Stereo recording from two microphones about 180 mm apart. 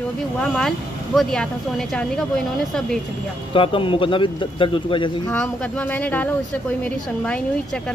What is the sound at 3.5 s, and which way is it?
A man's voice, 30° left (ahead or behind).